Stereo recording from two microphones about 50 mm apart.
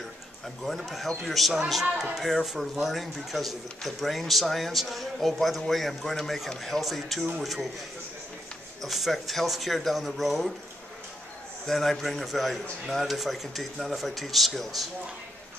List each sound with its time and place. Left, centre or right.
0.7 s speech: centre
8.8 s speech: centre
11.6 s speech: centre